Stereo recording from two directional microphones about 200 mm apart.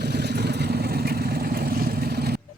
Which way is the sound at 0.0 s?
55° right (ahead or behind).